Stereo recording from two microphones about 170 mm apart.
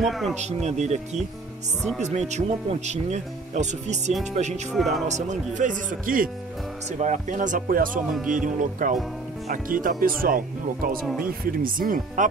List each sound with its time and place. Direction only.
0.0 s speech: centre (ahead or behind)
0.3 s speech: 40° right (ahead or behind)
4.7 s speech: centre (ahead or behind)
5.0 s speech: 45° right (ahead or behind)